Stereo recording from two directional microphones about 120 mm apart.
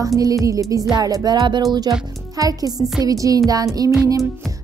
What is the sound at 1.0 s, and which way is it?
Music, 30° right (ahead or behind).